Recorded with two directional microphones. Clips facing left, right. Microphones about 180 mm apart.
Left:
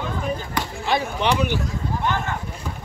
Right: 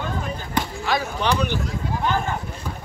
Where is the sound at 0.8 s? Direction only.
25° left (ahead or behind).